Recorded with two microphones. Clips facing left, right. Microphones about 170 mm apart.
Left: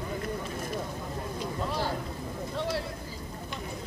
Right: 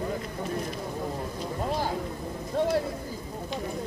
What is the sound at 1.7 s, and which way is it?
Vehicle, 45° right (ahead or behind).